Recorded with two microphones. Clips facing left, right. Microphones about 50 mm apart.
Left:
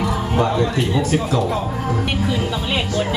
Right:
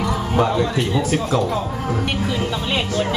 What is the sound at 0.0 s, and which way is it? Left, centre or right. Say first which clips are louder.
Speech: even; centre.